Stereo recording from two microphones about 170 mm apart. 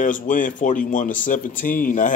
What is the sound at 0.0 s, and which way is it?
Speech, 50° left (ahead or behind).